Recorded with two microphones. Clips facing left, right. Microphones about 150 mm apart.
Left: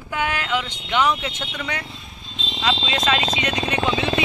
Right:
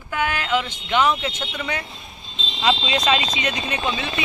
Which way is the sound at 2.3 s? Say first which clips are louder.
Right 2 dB; 20° right (ahead or behind).